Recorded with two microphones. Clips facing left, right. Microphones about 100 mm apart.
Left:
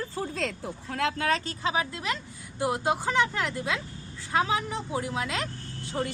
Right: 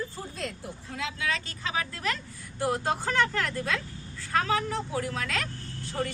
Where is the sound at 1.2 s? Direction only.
40° left (ahead or behind).